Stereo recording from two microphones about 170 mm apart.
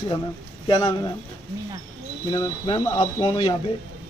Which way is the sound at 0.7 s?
20° left (ahead or behind).